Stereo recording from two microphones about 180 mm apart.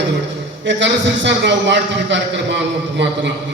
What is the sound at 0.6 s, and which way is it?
A man's voice, 80° right.